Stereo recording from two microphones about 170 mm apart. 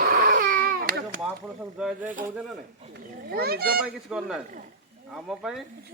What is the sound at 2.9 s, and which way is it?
Children playing, 65° right (ahead or behind).